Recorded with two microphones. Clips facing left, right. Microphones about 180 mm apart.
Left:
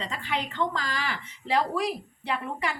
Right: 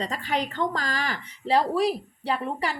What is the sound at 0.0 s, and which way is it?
Speech, 40° right (ahead or behind).